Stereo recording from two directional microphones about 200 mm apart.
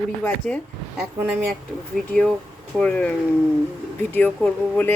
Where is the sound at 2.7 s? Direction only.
5° left (ahead or behind).